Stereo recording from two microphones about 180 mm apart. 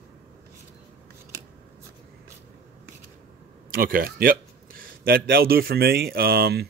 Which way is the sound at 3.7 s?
55° right (ahead or behind).